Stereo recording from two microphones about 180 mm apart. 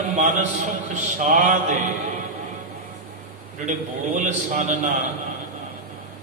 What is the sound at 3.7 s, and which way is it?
A man's voice, 45° right (ahead or behind).